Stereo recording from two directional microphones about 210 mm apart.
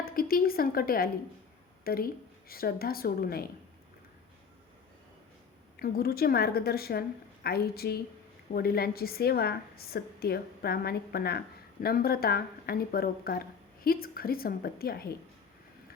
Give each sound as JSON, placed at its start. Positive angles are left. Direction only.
{"t": 0.0, "sound": "a woman's voice", "side_deg": 45}
{"t": 5.7, "sound": "a woman's voice", "side_deg": 45}